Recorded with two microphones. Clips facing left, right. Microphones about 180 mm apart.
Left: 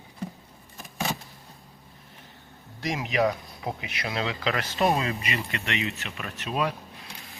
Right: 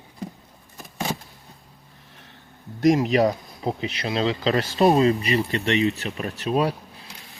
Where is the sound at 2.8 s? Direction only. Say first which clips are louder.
Right 8 dB; 45° right (ahead or behind).